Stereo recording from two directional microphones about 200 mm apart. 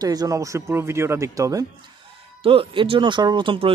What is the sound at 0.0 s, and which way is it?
A man's voice, 20° right (ahead or behind).